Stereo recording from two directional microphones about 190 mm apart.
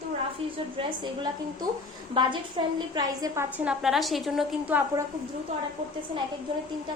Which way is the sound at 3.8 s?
Centre (ahead or behind).